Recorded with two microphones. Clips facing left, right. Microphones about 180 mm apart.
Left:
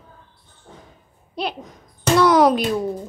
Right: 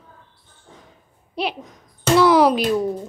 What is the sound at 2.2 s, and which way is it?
Speech, centre (ahead or behind).